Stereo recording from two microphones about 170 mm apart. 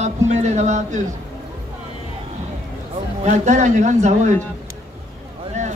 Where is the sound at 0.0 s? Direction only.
40° right (ahead or behind).